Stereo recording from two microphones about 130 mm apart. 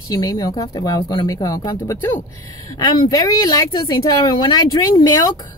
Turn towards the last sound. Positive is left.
turn(degrees=30)  # may be behind; listen again after turning